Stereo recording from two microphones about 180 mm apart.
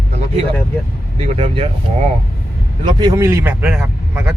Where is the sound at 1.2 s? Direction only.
35° right (ahead or behind).